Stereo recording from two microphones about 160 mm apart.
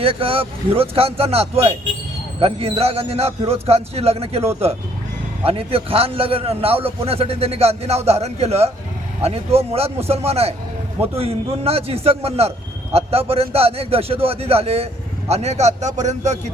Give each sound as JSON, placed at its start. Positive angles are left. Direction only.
{"t": 0.0, "sound": "a man's voice", "side_deg": -35}
{"t": 5.5, "sound": "a man's voice", "side_deg": -35}